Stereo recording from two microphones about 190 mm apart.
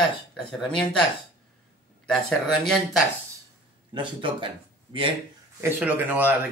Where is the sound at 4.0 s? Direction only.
25° right (ahead or behind).